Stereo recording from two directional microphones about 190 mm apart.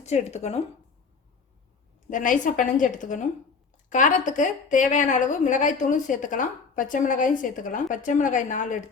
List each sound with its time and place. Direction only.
0.0 s a woman's voice: 35° left (ahead or behind)
2.0 s a woman's voice: 45° left (ahead or behind)